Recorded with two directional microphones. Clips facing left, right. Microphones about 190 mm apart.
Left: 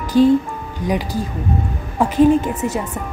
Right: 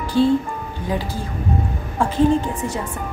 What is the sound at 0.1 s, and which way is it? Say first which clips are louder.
Speech: left 4 dB; 15° left (ahead or behind).